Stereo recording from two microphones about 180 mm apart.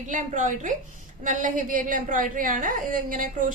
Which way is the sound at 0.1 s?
45° right (ahead or behind).